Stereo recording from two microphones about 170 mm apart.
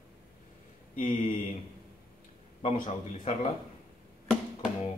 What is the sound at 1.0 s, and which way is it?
Speech, 50° left (ahead or behind).